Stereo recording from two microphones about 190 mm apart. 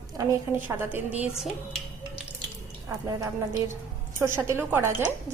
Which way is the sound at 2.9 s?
15° right (ahead or behind).